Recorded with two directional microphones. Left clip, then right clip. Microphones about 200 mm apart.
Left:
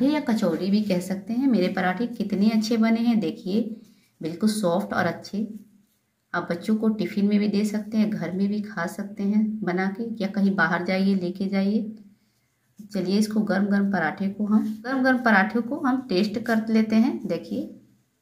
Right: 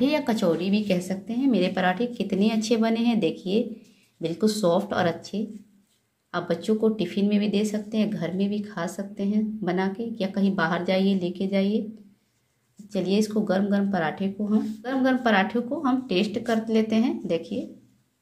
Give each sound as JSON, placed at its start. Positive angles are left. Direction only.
{"t": 0.1, "sound": "a woman's voice", "side_deg": -35}
{"t": 12.9, "sound": "speech", "side_deg": -25}